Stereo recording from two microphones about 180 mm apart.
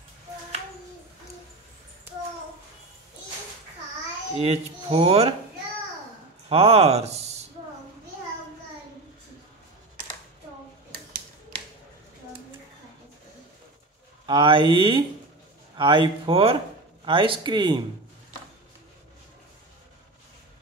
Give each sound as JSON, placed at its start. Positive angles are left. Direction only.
{"t": 4.4, "sound": "speech", "side_deg": -35}
{"t": 6.5, "sound": "speech", "side_deg": -35}
{"t": 14.2, "sound": "speech", "side_deg": -25}